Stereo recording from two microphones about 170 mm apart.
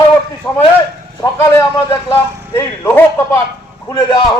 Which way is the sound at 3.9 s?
25° left (ahead or behind).